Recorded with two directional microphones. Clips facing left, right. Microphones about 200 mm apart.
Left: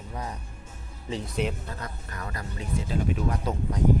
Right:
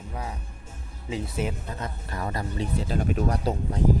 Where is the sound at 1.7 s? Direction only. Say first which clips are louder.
Right 3 dB; 25° right (ahead or behind).